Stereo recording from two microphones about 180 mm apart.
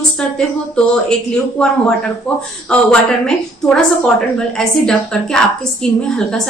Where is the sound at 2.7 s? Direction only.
5° left (ahead or behind).